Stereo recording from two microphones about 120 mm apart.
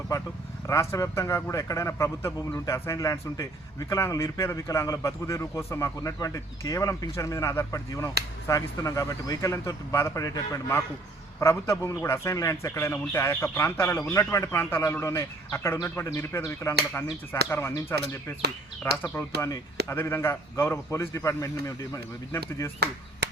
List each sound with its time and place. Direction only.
0.7 s a man's voice: 25° left (ahead or behind)